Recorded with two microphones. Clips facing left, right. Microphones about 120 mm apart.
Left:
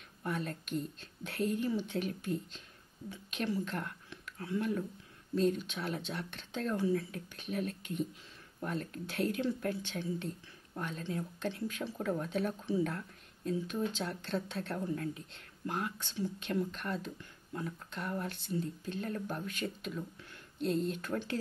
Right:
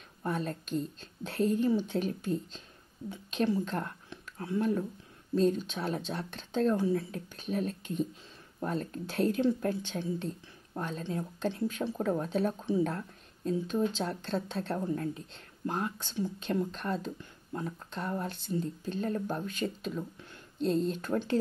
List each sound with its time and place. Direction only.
0.2 s speech: 30° right (ahead or behind)